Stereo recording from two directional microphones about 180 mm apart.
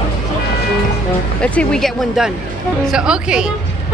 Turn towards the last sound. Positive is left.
turn(degrees=-5)  # may be behind; listen again after turning